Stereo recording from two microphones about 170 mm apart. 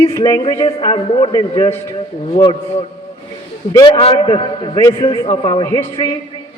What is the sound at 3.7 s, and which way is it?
A man's voice, 25° left (ahead or behind).